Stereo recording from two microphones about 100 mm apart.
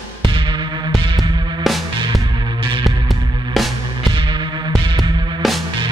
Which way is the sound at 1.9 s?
50° right (ahead or behind).